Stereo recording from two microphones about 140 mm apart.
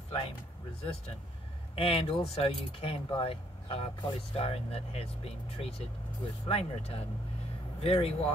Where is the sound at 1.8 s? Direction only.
45° left (ahead or behind).